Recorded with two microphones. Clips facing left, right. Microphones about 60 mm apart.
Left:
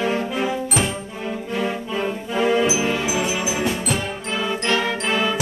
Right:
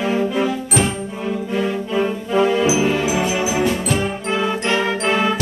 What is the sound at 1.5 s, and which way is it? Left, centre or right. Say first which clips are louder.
Music: right 2 dB; centre.